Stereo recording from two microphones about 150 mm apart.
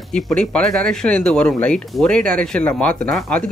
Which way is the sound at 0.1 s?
5° left (ahead or behind).